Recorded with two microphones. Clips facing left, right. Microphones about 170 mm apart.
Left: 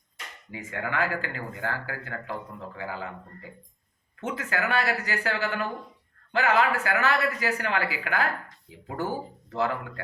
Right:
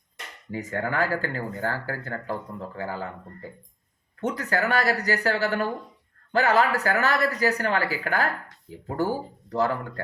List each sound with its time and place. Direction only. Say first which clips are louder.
0.5 s speech: right 4 dB; 40° right (ahead or behind)